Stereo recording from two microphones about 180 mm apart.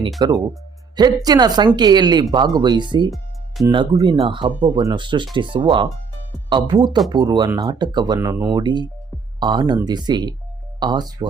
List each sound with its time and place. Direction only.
0.2 s speech: 20° right (ahead or behind)